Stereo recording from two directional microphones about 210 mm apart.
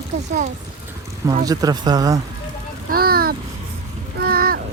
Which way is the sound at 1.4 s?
15° right (ahead or behind).